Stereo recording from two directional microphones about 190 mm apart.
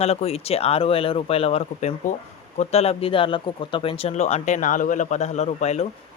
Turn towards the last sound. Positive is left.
turn(degrees=35)  # may be behind; listen again after turning